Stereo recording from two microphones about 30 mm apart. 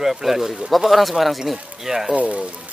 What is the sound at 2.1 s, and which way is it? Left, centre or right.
Speech, right.